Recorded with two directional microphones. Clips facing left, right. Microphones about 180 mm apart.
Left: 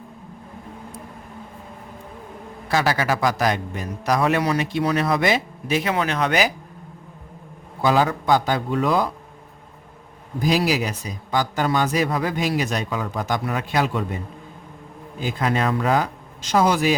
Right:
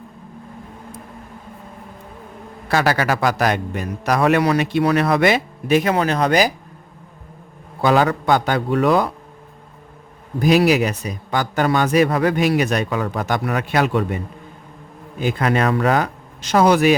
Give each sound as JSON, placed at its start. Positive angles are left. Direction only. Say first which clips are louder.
{"t": 2.6, "sound": "a man's voice", "louder": "right 3 dB", "side_deg": -65}
{"t": 7.8, "sound": "a man's voice", "louder": "right 3 dB", "side_deg": -65}
{"t": 10.4, "sound": "a man's voice", "louder": "right 6 dB", "side_deg": -65}
{"t": 15.2, "sound": "speech", "louder": "right 4 dB", "side_deg": -65}